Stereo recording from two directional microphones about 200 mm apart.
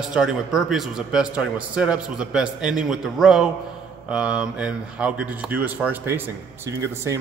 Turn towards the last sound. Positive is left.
turn(degrees=-15)  # may be behind; listen again after turning